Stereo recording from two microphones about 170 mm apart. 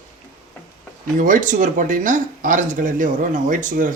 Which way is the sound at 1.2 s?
50° right (ahead or behind).